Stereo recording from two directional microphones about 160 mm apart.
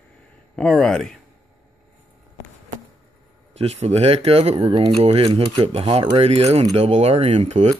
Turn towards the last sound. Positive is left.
turn(degrees=-40)  # may be behind; listen again after turning